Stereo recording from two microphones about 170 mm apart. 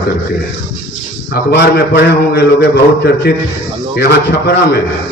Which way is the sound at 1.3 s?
75° left (ahead or behind).